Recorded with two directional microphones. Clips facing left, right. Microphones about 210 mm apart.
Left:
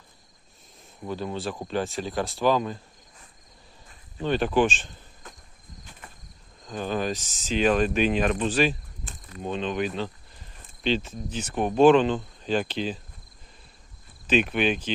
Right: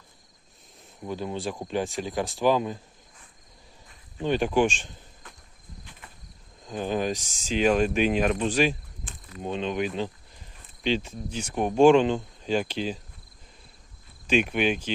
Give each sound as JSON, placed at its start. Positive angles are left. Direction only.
{"t": 1.0, "sound": "speech", "side_deg": -15}
{"t": 4.2, "sound": "speech", "side_deg": -15}
{"t": 6.7, "sound": "speech", "side_deg": -15}
{"t": 14.3, "sound": "speech", "side_deg": -10}